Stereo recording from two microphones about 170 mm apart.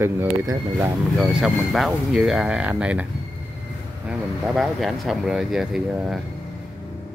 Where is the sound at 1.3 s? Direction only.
Centre (ahead or behind).